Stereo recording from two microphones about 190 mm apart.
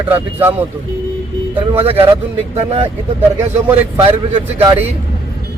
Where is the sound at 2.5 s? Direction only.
30° right (ahead or behind).